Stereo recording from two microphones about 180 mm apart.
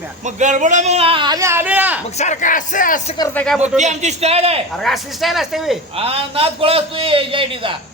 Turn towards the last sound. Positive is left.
turn(degrees=-30)  # may be behind; listen again after turning